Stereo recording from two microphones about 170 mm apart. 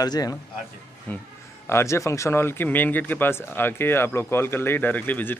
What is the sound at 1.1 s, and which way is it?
Speech, 10° left (ahead or behind).